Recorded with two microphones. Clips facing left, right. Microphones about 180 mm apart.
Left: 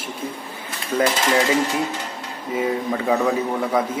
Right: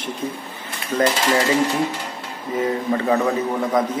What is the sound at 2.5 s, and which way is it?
Speech, 5° left (ahead or behind).